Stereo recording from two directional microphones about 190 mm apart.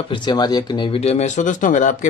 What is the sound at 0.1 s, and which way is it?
Speech, 25° left (ahead or behind).